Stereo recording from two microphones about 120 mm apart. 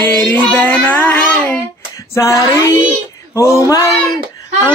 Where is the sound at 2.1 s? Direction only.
25° left (ahead or behind).